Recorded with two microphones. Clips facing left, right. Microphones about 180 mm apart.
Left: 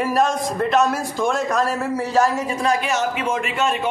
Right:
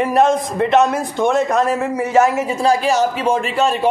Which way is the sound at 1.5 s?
20° right (ahead or behind).